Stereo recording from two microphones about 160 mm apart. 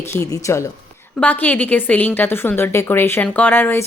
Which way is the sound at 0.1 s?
15° left (ahead or behind).